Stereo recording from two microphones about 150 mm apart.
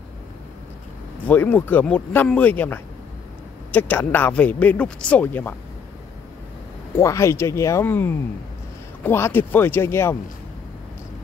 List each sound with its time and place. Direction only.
1.2 s speech: 10° left (ahead or behind)
7.0 s speech: 20° left (ahead or behind)